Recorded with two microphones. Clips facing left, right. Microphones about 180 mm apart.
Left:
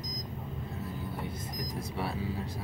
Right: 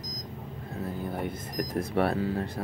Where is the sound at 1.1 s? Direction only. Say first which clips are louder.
Right 5 dB; 60° right (ahead or behind).